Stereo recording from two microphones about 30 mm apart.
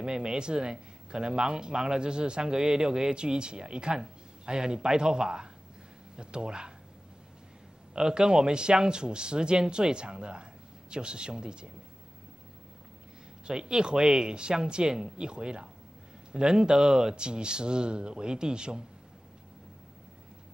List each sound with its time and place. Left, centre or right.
0.2 s speech: right
2.6 s speech: centre
8.1 s speech: right
13.5 s speech: right
14.9 s speech: centre
15.1 s speech: right
17.1 s speech: right